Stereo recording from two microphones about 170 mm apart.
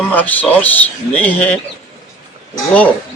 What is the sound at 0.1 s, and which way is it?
A man's voice, 10° left (ahead or behind).